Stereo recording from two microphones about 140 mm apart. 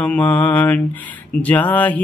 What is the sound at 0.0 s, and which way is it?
Speech, 10° left (ahead or behind).